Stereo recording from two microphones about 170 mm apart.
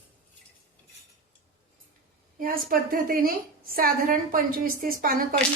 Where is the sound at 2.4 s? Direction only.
55° right (ahead or behind).